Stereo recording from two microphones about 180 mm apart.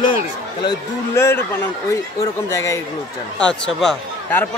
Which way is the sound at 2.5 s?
15° left (ahead or behind).